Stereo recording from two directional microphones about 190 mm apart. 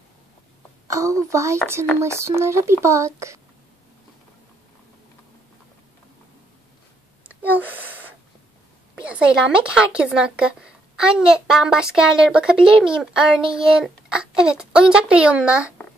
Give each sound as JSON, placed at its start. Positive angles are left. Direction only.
{"t": 0.8, "sound": "speech", "side_deg": -15}
{"t": 7.2, "sound": "a sound", "side_deg": -10}
{"t": 9.0, "sound": "a woman's voice", "side_deg": -5}